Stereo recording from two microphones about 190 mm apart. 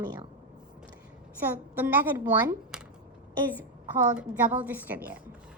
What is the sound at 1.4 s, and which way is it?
A woman's voice, 10° right (ahead or behind).